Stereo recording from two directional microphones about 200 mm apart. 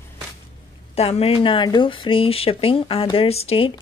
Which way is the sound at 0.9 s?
30° left (ahead or behind).